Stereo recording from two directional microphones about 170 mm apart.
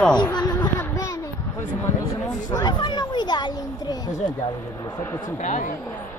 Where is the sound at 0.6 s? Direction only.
15° left (ahead or behind).